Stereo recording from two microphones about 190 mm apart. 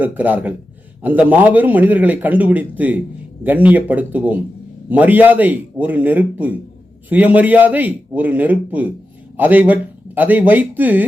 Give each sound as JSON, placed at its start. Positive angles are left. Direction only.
{"t": 0.0, "sound": "a man's voice", "side_deg": -10}